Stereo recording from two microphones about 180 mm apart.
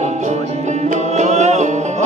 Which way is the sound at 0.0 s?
40° right (ahead or behind).